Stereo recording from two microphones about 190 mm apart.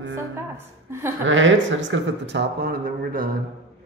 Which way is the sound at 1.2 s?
80° right.